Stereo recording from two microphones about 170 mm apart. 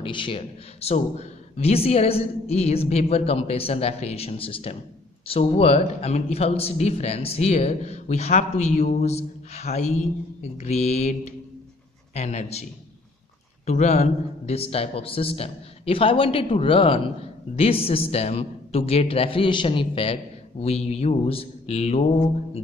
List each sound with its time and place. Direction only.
0.0 s speech: 30° left (ahead or behind)
13.7 s speech: 40° left (ahead or behind)